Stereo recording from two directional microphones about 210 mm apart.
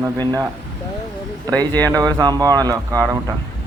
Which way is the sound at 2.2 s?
20° right (ahead or behind).